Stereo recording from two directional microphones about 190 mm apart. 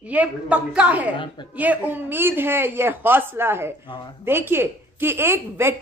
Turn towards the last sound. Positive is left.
turn(degrees=-15)  # may be behind; listen again after turning